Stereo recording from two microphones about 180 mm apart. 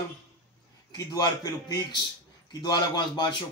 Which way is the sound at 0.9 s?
20° left (ahead or behind).